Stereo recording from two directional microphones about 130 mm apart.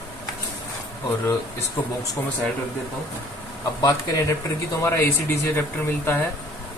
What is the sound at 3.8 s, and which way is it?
Speech, 25° left (ahead or behind).